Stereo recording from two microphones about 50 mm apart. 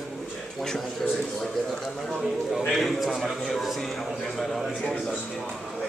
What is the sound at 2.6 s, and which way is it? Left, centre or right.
A man's voice, centre.